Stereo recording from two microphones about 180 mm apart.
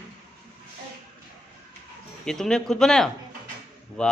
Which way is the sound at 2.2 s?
5° left (ahead or behind).